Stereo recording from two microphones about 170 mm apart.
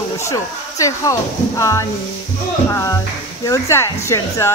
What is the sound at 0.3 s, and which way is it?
A woman's voice, 20° left (ahead or behind).